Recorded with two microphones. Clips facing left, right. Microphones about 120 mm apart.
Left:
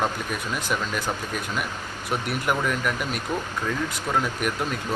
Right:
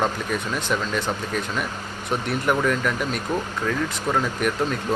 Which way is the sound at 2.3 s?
5° left (ahead or behind).